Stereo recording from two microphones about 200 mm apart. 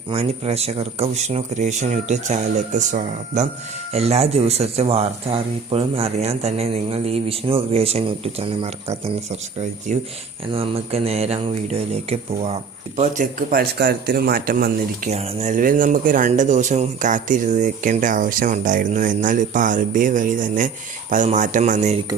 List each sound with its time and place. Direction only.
0.1 s speech: 30° right (ahead or behind)
13.0 s speech: 45° right (ahead or behind)
15.1 s speech: 30° right (ahead or behind)